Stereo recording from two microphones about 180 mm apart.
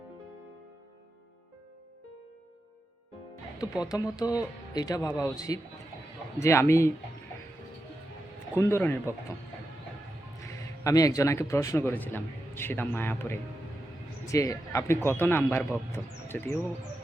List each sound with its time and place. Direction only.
3.6 s a man's voice: 20° left (ahead or behind)
8.5 s a man's voice: 15° left (ahead or behind)
10.4 s a man's voice: 20° left (ahead or behind)